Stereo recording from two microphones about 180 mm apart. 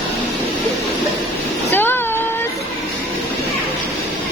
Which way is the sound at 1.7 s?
10° left (ahead or behind).